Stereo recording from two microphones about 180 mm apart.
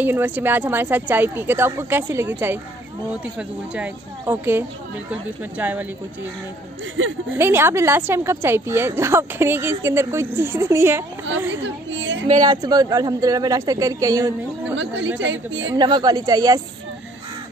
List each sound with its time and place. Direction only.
0.0 s a woman's voice: 10° right (ahead or behind)
7.0 s a woman's voice: 90° right
7.3 s a woman's voice: 15° right (ahead or behind)
11.6 s a woman's voice: 90° right
12.4 s speech: 20° right (ahead or behind)
15.1 s a woman's voice: 90° right
15.7 s speech: 25° right (ahead or behind)